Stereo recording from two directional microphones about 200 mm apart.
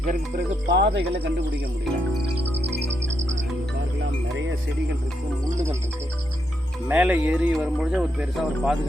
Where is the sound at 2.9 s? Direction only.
70° right (ahead or behind).